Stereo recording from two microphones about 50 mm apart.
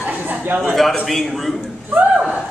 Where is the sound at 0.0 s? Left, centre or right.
Right.